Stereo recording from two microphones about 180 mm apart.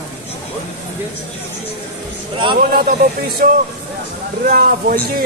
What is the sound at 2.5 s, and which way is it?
Speech, 50° right (ahead or behind).